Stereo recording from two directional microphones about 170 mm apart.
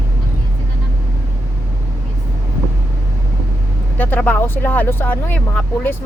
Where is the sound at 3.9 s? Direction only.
10° left (ahead or behind).